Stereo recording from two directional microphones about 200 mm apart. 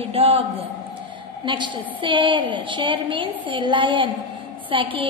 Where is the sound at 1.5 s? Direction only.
25° right (ahead or behind).